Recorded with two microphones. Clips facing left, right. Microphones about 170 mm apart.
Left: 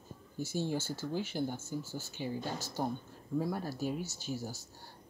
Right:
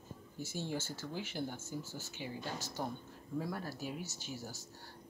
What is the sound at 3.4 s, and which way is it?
Speech, 30° left (ahead or behind).